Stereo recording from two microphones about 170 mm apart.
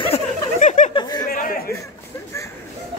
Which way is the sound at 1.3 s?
55° left (ahead or behind).